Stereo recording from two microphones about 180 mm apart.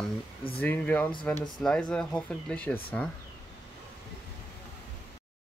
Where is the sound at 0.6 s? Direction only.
10° left (ahead or behind).